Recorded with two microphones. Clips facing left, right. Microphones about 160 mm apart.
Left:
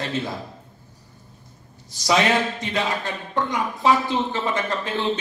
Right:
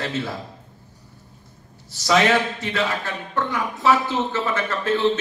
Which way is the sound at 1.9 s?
15° left (ahead or behind).